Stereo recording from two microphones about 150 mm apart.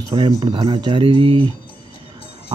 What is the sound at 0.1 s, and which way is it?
Speech, 35° right (ahead or behind).